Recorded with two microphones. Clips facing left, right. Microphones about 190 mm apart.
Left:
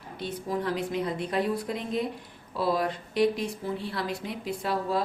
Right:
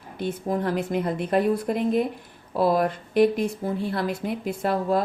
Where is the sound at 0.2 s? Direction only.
50° right (ahead or behind).